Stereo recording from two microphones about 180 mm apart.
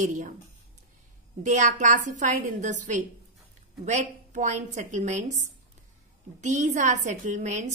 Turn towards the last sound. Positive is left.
turn(degrees=-40)  # may be behind; listen again after turning